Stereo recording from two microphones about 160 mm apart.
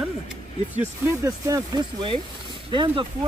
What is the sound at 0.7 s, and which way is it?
Speech, 15° right (ahead or behind).